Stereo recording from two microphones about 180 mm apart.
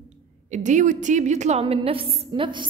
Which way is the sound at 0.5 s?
45° right (ahead or behind).